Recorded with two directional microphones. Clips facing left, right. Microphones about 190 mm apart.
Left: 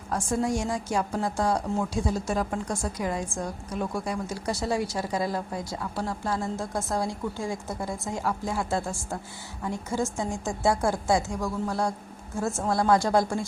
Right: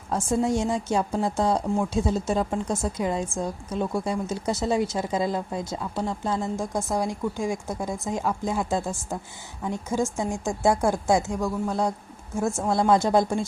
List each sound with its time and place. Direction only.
0.1 s a woman's voice: 25° right (ahead or behind)